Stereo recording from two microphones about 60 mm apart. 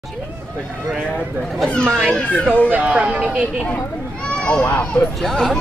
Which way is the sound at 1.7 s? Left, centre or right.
Centre.